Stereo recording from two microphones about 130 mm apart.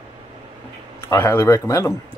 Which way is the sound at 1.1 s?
20° left (ahead or behind).